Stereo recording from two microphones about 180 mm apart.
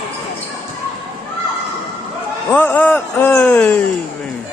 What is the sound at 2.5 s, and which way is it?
A man's voice, 10° left (ahead or behind).